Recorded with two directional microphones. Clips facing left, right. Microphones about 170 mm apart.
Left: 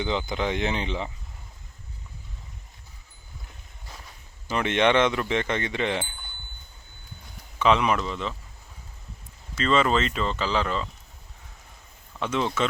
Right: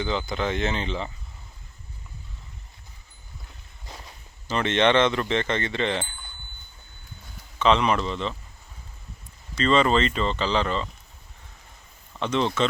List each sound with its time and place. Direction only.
0.0 s speech: 15° left (ahead or behind)
4.4 s speech: 10° left (ahead or behind)
7.6 s speech: 10° left (ahead or behind)
9.6 s speech: 5° left (ahead or behind)
12.2 s speech: 5° left (ahead or behind)